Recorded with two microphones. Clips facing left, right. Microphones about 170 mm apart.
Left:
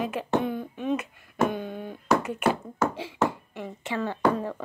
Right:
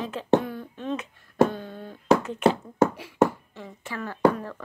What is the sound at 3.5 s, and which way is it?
Speech, 20° left (ahead or behind).